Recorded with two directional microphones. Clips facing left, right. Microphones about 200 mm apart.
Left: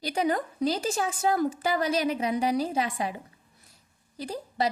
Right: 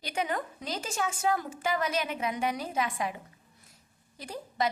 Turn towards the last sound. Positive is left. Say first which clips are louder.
# left 3 dB
turn(degrees=35)  # may be behind; listen again after turning